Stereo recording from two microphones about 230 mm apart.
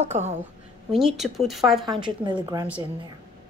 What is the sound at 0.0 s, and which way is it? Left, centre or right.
Speech, right.